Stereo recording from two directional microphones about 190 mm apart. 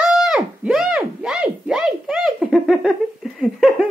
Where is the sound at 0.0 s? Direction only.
5° right (ahead or behind).